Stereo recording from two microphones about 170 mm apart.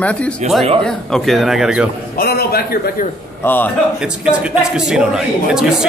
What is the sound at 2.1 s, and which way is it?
Speech, 65° left (ahead or behind).